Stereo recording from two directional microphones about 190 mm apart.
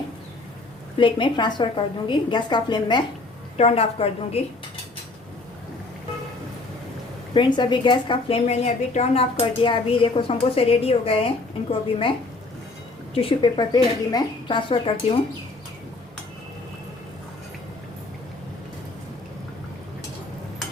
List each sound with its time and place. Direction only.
0.9 s a woman's voice: 25° left (ahead or behind)
7.3 s a woman's voice: 25° left (ahead or behind)
13.1 s a woman's voice: 25° left (ahead or behind)